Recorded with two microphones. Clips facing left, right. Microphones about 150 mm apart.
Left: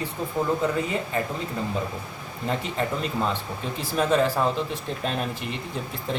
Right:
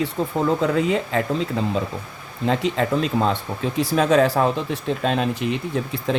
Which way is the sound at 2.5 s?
90° right.